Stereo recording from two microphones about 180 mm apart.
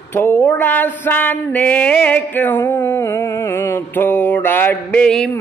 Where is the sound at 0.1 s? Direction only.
10° left (ahead or behind).